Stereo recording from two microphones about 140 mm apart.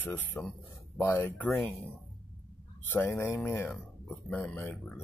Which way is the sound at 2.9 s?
15° left (ahead or behind).